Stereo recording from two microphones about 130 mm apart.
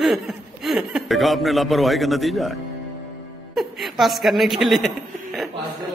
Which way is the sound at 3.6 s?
Centre (ahead or behind).